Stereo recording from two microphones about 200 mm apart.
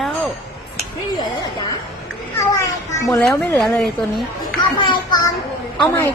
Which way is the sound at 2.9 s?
15° left (ahead or behind).